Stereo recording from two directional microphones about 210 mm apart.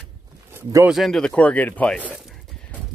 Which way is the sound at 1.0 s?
Centre (ahead or behind).